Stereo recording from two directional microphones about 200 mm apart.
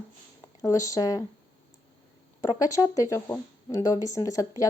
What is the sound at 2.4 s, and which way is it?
Speech, 15° left (ahead or behind).